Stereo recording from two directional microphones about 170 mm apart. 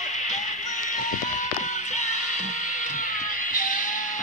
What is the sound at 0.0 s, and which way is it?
Music, 45° left (ahead or behind).